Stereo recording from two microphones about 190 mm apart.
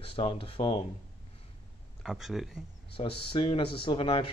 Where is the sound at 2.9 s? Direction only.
30° left (ahead or behind).